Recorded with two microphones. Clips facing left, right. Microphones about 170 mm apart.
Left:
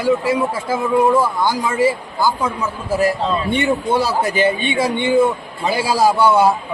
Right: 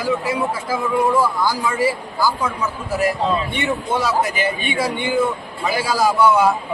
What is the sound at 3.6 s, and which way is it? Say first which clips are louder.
A man's voice: left 4 dB; 30° left (ahead or behind).